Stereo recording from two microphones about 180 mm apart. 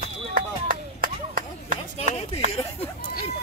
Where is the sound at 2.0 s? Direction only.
35° left (ahead or behind).